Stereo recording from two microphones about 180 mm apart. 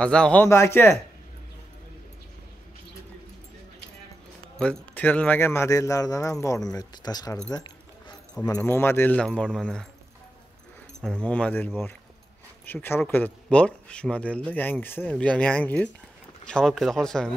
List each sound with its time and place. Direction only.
0.0 s speech: 5° left (ahead or behind)
4.6 s speech: 5° left (ahead or behind); by 7.3 s 20° left (ahead or behind)
7.5 s keys jangling: 25° left (ahead or behind)
8.5 s speech: 10° left (ahead or behind)
11.0 s speech: centre (ahead or behind)